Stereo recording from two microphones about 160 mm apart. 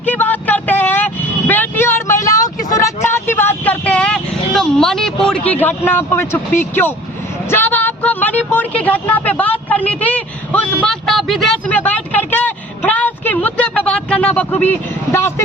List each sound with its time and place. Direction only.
0.0 s vehicle: 10° left (ahead or behind)
5.5 s speech: 10° left (ahead or behind)